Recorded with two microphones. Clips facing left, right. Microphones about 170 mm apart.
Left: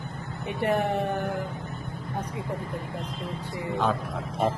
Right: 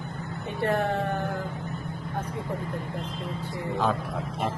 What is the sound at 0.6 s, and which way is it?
Speech, 15° left (ahead or behind).